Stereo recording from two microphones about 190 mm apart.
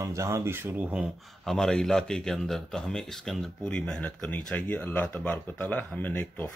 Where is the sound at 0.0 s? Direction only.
15° right (ahead or behind).